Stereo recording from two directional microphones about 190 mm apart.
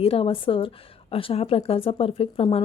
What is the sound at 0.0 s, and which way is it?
A woman's voice, 30° left (ahead or behind).